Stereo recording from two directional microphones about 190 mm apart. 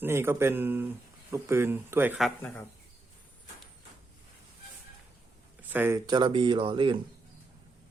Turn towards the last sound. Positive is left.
turn(degrees=-25)  # may be behind; listen again after turning